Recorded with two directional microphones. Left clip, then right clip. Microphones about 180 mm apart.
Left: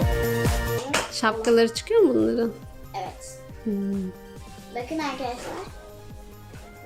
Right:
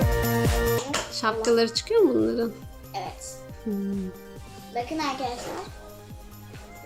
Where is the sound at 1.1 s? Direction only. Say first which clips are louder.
Left 2 dB; 15° left (ahead or behind).